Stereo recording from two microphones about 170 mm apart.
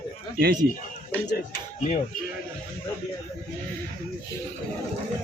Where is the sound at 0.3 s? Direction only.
55° right (ahead or behind).